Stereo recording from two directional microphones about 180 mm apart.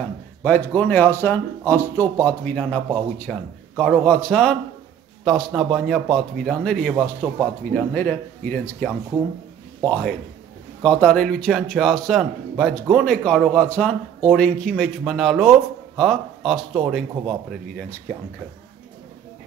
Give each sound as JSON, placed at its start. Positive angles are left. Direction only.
{"t": 0.4, "sound": "a man's voice", "side_deg": 10}
{"t": 17.1, "sound": "speech", "side_deg": -25}
{"t": 17.5, "sound": "a man's voice", "side_deg": 5}